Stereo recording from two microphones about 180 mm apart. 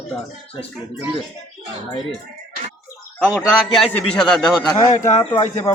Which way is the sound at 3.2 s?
5° right (ahead or behind).